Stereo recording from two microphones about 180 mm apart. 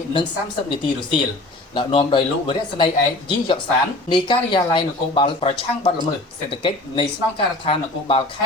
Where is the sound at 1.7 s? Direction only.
25° left (ahead or behind).